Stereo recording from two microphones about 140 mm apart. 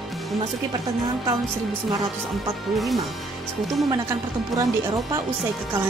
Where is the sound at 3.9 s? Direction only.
25° right (ahead or behind).